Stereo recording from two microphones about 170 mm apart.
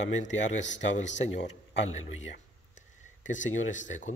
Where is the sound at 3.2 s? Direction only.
45° left (ahead or behind).